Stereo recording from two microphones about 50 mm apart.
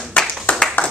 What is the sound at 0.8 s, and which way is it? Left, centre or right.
Clapping, left.